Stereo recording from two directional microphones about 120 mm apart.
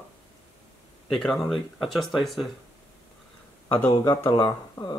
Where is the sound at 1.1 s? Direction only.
Centre (ahead or behind).